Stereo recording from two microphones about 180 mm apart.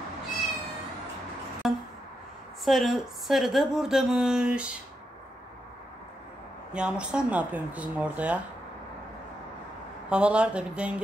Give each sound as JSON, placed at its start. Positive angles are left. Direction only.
{"t": 1.6, "sound": "a sound", "side_deg": 0}
{"t": 2.6, "sound": "speech", "side_deg": 0}
{"t": 6.7, "sound": "speech", "side_deg": -5}
{"t": 10.0, "sound": "speech", "side_deg": -5}